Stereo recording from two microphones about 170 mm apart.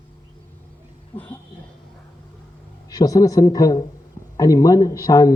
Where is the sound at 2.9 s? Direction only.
20° left (ahead or behind).